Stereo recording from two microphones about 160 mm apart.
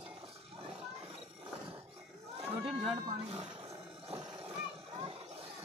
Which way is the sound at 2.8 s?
40° right (ahead or behind).